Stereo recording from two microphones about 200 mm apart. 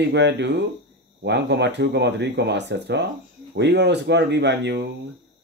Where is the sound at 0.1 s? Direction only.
60° right (ahead or behind).